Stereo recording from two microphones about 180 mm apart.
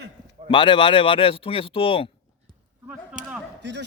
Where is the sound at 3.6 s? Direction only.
75° right (ahead or behind).